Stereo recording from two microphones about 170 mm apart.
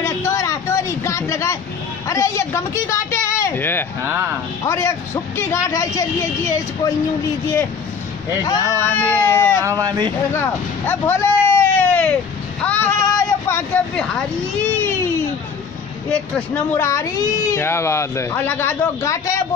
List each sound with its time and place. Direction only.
0.0 s a sound: 15° left (ahead or behind)
2.0 s speech: 20° left (ahead or behind)
4.0 s speech: 10° right (ahead or behind)
4.6 s speech: 15° left (ahead or behind)
8.5 s speech: 15° left (ahead or behind)
9.6 s speech: 20° right (ahead or behind)
10.3 s vehicle: 15° left (ahead or behind)
12.6 s a sound: 10° left (ahead or behind)
16.1 s speech: 10° left (ahead or behind)